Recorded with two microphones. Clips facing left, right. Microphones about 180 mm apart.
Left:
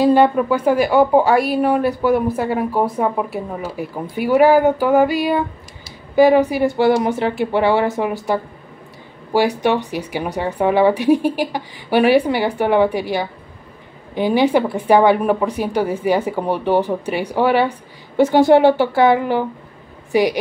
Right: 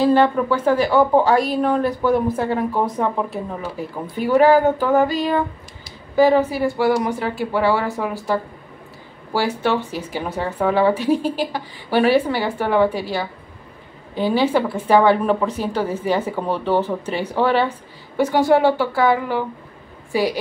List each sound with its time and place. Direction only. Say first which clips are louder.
0.0 s a woman's voice: left 2 dB; 15° left (ahead or behind)
18.1 s a woman's voice: left 4 dB; 25° left (ahead or behind)